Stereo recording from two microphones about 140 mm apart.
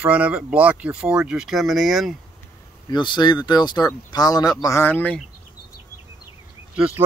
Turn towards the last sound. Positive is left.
turn(degrees=-10)  # may be behind; listen again after turning